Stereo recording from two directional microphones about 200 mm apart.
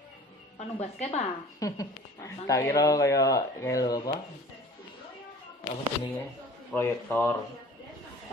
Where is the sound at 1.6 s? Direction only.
15° left (ahead or behind).